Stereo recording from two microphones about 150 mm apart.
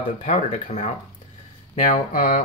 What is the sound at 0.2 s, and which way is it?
Speech, 50° left (ahead or behind).